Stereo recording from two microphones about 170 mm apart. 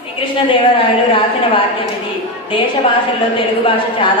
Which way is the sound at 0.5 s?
30° left (ahead or behind).